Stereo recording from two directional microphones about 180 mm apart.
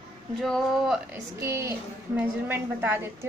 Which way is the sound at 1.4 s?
15° right (ahead or behind).